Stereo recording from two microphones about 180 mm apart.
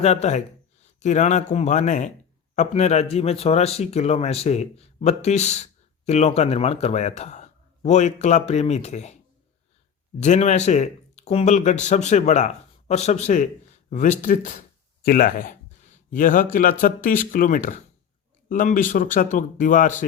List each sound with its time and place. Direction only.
0.0 s speech: 40° left (ahead or behind)
10.2 s speech: 40° left (ahead or behind)